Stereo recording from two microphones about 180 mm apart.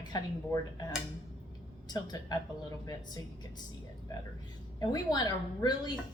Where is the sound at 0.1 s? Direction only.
20° left (ahead or behind).